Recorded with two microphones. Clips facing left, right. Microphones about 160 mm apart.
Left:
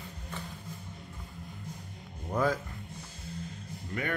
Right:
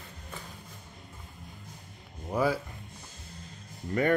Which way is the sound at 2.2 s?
10° right (ahead or behind).